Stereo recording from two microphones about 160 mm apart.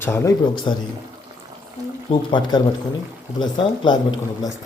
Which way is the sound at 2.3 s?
30° left (ahead or behind).